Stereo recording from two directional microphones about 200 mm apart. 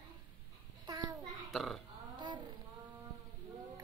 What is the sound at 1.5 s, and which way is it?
Speech, centre (ahead or behind).